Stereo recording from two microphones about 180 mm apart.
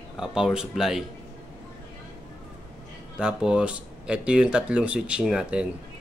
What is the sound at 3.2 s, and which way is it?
Speech, 5° right (ahead or behind).